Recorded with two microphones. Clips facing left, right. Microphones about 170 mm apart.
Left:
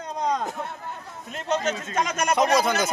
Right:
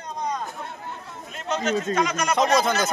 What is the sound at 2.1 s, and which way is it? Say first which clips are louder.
Speech: even; 50° left (ahead or behind).